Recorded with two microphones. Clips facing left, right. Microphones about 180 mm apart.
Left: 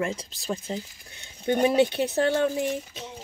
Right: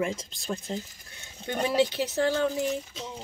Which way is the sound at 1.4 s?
20° left (ahead or behind).